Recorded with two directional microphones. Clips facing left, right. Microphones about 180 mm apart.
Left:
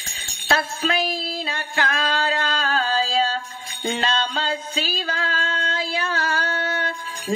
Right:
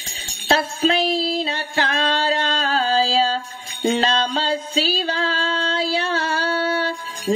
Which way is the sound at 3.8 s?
35° right (ahead or behind).